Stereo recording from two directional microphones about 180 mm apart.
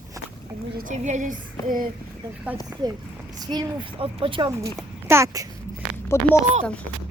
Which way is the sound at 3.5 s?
25° right (ahead or behind).